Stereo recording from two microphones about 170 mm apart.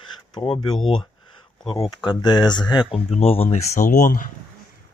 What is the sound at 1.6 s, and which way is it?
Speech, 25° left (ahead or behind).